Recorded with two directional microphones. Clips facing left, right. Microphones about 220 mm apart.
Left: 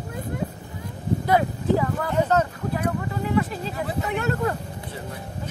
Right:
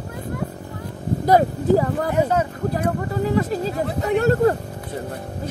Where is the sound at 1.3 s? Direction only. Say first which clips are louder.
Right 6 dB; 40° right (ahead or behind).